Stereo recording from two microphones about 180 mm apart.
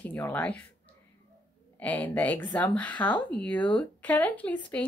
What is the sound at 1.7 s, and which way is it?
Speech, 10° left (ahead or behind).